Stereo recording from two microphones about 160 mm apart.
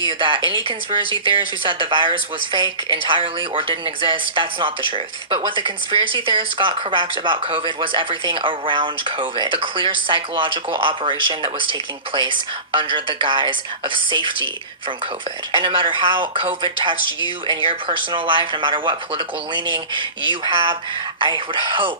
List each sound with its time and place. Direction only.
0.1 s a woman's voice: 30° right (ahead or behind)